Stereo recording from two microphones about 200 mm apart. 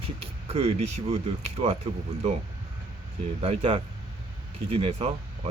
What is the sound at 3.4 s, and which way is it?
Speech, 30° right (ahead or behind).